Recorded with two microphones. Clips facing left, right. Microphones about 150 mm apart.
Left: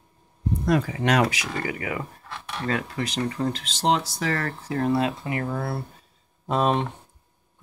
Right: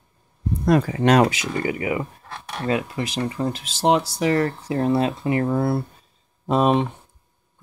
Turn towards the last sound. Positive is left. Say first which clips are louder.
# right 4 dB
turn(degrees=-10)  # may be behind; listen again after turning